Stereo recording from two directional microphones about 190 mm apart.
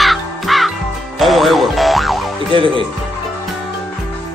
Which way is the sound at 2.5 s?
25° right (ahead or behind).